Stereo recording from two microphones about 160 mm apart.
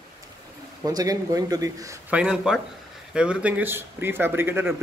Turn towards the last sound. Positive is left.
turn(degrees=-15)  # may be behind; listen again after turning